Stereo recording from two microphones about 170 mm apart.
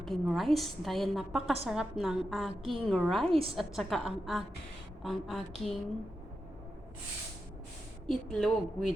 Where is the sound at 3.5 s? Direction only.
Centre (ahead or behind).